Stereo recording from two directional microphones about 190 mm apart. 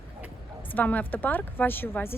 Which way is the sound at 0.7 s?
10° left (ahead or behind).